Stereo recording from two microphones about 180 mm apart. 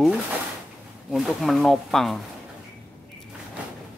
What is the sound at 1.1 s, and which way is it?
Speech, centre (ahead or behind).